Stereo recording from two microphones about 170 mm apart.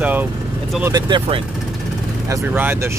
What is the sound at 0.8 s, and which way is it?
Speech, 25° right (ahead or behind).